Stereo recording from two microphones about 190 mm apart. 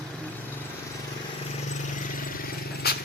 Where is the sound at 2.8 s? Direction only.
55° left (ahead or behind).